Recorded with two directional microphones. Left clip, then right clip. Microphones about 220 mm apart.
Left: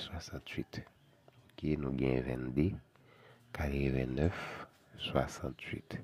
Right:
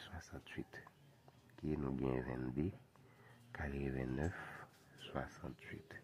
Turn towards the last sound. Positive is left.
turn(degrees=45)  # may be behind; listen again after turning